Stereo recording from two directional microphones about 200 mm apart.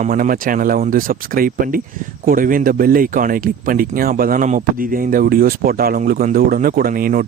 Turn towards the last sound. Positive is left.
turn(degrees=-45)  # may be behind; listen again after turning